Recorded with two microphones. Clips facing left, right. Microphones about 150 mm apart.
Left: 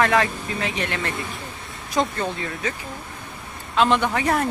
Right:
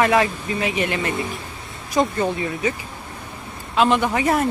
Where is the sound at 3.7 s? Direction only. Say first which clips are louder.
Right 2 dB; 5° right (ahead or behind).